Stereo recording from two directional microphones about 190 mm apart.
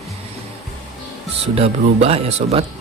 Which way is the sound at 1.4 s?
30° right (ahead or behind).